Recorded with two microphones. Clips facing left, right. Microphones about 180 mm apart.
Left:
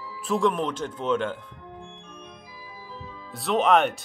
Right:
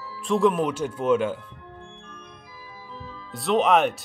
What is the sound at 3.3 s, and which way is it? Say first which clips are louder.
Speech: right 1 dB; centre (ahead or behind).